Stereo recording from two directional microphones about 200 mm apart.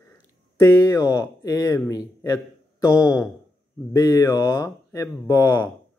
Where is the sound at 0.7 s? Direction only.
15° left (ahead or behind).